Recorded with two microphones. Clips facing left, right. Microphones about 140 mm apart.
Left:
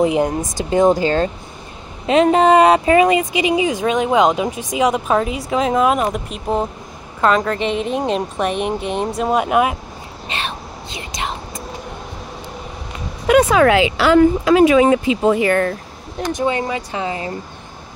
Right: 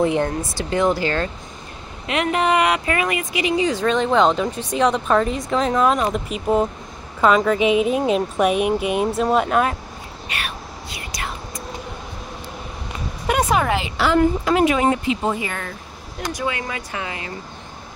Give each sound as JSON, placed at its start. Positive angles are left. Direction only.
{"t": 0.0, "sound": "a woman's voice", "side_deg": 15}
{"t": 10.2, "sound": "whispering", "side_deg": 25}
{"t": 13.3, "sound": "speech", "side_deg": 90}
{"t": 15.3, "sound": "speech", "side_deg": 60}
{"t": 16.3, "sound": "speech", "side_deg": 25}